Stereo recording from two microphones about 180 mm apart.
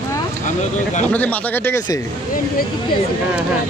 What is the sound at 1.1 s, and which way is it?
Speech, 10° left (ahead or behind).